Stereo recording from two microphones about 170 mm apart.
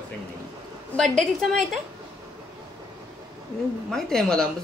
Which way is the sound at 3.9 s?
Centre (ahead or behind).